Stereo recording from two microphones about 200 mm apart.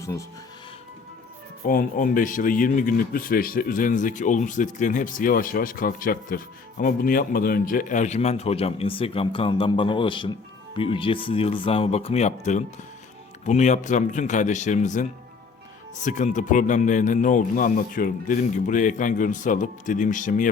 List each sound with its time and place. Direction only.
1.6 s speech: 45° left (ahead or behind)
16.0 s speech: 40° left (ahead or behind)